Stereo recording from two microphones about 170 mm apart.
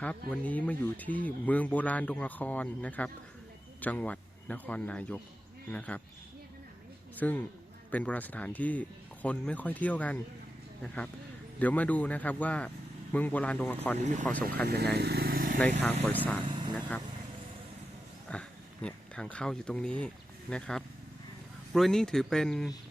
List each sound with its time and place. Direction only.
0.3 s a man's voice: 10° left (ahead or behind)
7.2 s speech: 10° left (ahead or behind)
11.6 s speech: 10° left (ahead or behind)
14.0 s speech: 45° right (ahead or behind)
14.9 s vehicle: 70° right (ahead or behind)
15.5 s speech: 5° left (ahead or behind)
16.5 s vehicle: 25° right (ahead or behind)
18.3 s speech: 5° left (ahead or behind)